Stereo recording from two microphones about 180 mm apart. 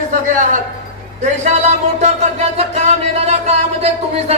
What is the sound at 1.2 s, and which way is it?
Speech, 40° right (ahead or behind).